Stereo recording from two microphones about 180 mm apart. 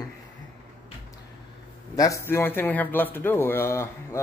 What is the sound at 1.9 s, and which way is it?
A man's voice, 15° left (ahead or behind).